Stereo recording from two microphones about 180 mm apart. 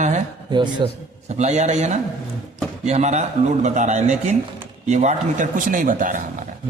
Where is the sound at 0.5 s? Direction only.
25° right (ahead or behind).